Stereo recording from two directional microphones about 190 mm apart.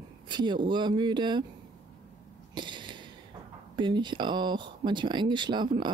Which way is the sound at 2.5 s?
25° right (ahead or behind).